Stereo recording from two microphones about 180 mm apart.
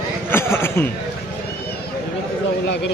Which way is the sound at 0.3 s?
15° left (ahead or behind).